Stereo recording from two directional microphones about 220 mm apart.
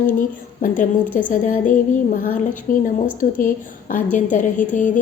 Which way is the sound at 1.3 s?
40° left (ahead or behind).